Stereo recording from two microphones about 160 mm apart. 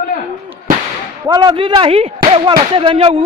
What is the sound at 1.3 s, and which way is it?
A man's voice, 25° right (ahead or behind).